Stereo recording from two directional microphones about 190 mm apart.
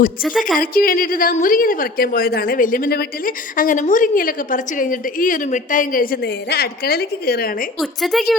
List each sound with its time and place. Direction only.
0.2 s a woman's voice: 5° right (ahead or behind)
0.6 s a woman's voice: 50° left (ahead or behind)
7.8 s a woman's voice: centre (ahead or behind)